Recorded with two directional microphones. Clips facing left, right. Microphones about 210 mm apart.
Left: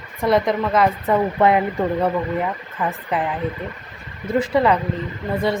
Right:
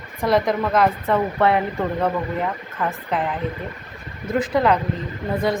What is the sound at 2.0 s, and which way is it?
Speech, 5° left (ahead or behind).